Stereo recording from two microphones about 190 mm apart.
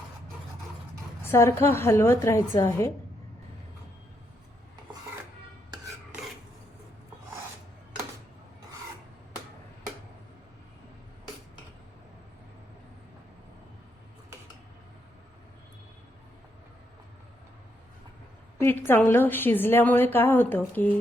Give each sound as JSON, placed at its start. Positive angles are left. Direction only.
{"t": 1.2, "sound": "a woman's voice", "side_deg": 15}
{"t": 18.9, "sound": "a woman's voice", "side_deg": 10}